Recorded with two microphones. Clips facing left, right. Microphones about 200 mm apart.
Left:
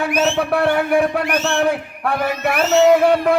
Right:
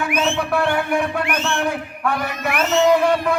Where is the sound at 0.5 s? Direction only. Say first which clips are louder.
Left 4 dB; 35° left (ahead or behind).